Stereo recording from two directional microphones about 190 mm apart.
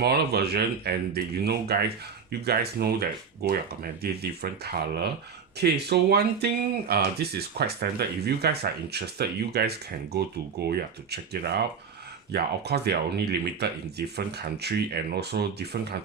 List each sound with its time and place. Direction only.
0.0 s speech: 55° right (ahead or behind)